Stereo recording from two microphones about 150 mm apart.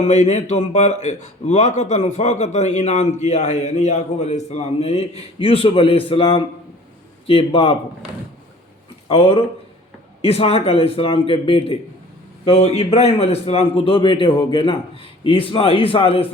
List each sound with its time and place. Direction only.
0.0 s a man's voice: 50° left (ahead or behind)
9.0 s a man's voice: 40° left (ahead or behind)